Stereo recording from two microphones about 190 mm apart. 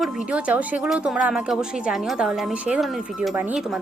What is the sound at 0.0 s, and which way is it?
Speech, 5° right (ahead or behind).